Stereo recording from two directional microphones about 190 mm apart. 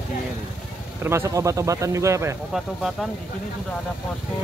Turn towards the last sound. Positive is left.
turn(degrees=0)  # may be behind; listen again after turning